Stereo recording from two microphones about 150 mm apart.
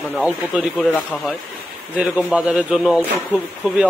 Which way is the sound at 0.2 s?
5° right (ahead or behind).